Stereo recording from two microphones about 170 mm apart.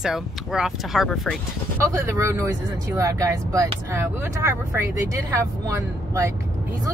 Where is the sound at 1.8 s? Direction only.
20° right (ahead or behind).